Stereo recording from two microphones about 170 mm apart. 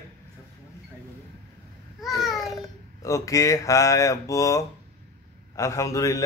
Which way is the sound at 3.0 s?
20° left (ahead or behind).